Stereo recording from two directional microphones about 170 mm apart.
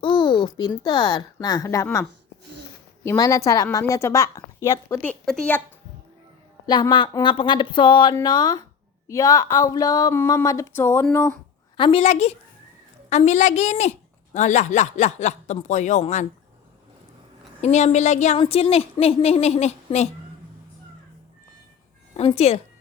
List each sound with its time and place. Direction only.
0.0 s a woman's voice: 25° left (ahead or behind)
5.0 s a woman's voice: 5° left (ahead or behind)
6.7 s a woman's voice: 25° left (ahead or behind)
11.8 s a woman's voice: 35° left (ahead or behind)
17.6 s a woman's voice: 40° left (ahead or behind)
22.1 s a woman's voice: 35° left (ahead or behind)